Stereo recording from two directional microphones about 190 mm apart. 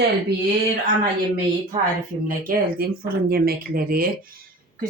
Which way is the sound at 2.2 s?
50° right (ahead or behind).